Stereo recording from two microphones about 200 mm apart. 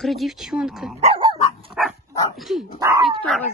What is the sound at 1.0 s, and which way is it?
Dog, 30° right (ahead or behind).